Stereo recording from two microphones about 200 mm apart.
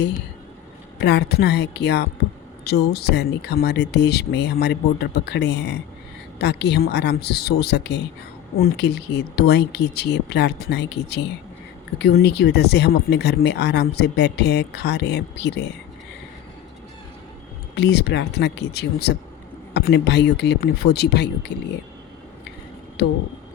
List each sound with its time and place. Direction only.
0.9 s speech: 55° left (ahead or behind)
17.7 s speech: 60° left (ahead or behind)
23.0 s speech: 55° left (ahead or behind)